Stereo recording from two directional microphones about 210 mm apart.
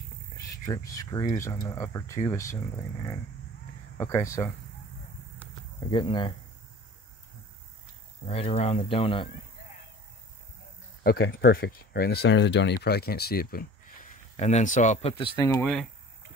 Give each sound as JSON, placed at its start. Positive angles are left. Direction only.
{"t": 0.4, "sound": "speech", "side_deg": 15}
{"t": 4.0, "sound": "speech", "side_deg": 15}
{"t": 5.9, "sound": "speech", "side_deg": 25}
{"t": 8.3, "sound": "speech", "side_deg": 30}
{"t": 11.1, "sound": "speech", "side_deg": 45}
{"t": 14.3, "sound": "speech", "side_deg": 30}
{"t": 15.4, "sound": "speech", "side_deg": 15}